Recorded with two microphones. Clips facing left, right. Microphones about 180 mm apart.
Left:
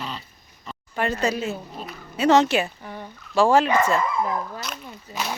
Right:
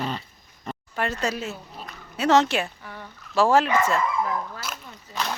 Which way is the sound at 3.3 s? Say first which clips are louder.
Left 2 dB; centre (ahead or behind).